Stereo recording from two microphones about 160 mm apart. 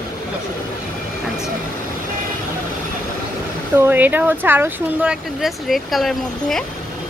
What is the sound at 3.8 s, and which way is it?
Speech, 10° right (ahead or behind).